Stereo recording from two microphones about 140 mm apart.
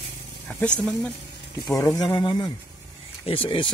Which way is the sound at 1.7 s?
20° left (ahead or behind).